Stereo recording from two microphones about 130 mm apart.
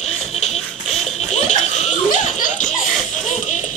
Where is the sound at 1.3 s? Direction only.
60° left (ahead or behind).